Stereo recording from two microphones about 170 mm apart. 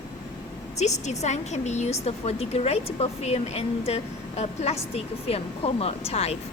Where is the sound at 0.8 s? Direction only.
40° left (ahead or behind).